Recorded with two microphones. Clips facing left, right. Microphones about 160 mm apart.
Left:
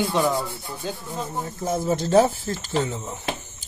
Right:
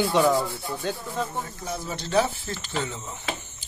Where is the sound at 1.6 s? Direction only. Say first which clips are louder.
Left 9 dB; 45° left (ahead or behind).